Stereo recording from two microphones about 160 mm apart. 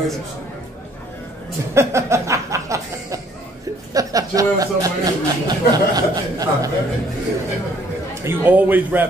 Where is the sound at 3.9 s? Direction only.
20° right (ahead or behind).